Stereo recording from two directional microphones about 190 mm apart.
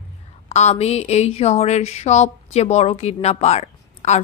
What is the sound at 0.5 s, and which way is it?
A woman's voice, 35° left (ahead or behind).